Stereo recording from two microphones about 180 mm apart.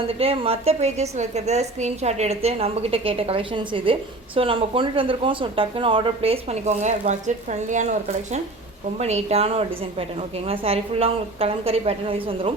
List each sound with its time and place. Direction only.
0.1 s speech: 30° right (ahead or behind)